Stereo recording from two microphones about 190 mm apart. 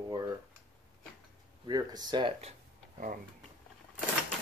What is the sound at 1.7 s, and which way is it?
Speech, 20° right (ahead or behind).